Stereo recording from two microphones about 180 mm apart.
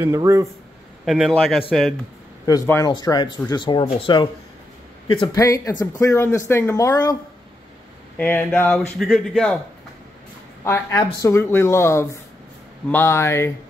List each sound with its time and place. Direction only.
0.0 s speech: 20° right (ahead or behind)
1.0 s speech: centre (ahead or behind)
2.4 s speech: 15° left (ahead or behind)
5.4 s speech: 15° left (ahead or behind)
8.2 s speech: 10° left (ahead or behind)
10.6 s speech: 15° left (ahead or behind)